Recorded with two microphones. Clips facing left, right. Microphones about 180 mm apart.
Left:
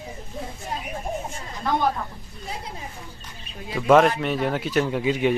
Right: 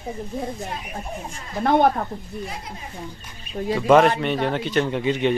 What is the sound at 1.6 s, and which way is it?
Speech, 60° right (ahead or behind).